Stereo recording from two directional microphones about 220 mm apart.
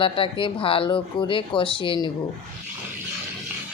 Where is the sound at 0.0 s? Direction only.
25° left (ahead or behind).